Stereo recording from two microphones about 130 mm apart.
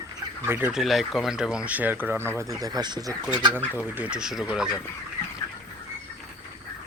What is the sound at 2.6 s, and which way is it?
Speech, 30° right (ahead or behind).